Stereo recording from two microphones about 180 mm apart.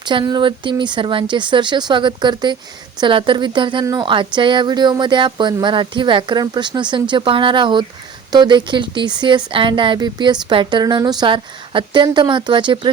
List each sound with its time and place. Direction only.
0.0 s speech: 25° right (ahead or behind)